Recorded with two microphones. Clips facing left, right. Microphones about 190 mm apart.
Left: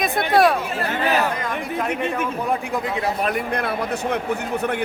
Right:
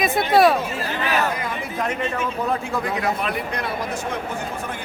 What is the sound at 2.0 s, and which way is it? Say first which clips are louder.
Speech: left 1 dB; 15° left (ahead or behind).